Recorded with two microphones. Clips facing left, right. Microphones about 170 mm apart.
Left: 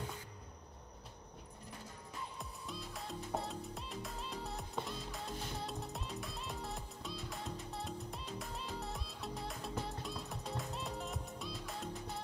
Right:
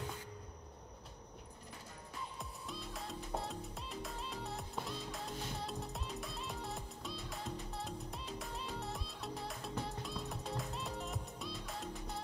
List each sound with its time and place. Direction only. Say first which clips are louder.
2.3 s music: even; centre (ahead or behind)